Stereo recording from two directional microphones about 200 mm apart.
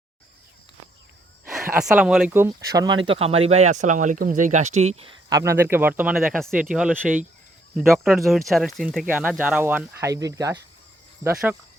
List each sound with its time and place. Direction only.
1.5 s speech: centre (ahead or behind); by 5.1 s 30° right (ahead or behind)
5.3 s speech: 15° right (ahead or behind)